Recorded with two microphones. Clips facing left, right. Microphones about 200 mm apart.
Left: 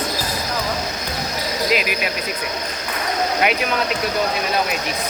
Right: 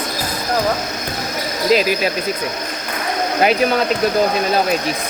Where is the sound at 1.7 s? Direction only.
35° right (ahead or behind).